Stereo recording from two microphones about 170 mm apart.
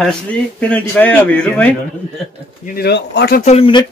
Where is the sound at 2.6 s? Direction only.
65° left (ahead or behind).